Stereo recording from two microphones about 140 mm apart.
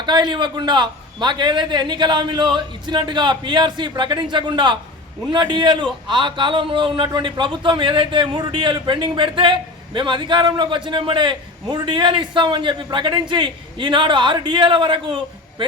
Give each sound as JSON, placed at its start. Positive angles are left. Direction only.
{"t": 0.0, "sound": "a man's voice", "side_deg": -30}